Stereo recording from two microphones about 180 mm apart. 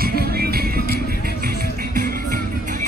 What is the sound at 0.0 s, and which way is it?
Music, 55° right (ahead or behind).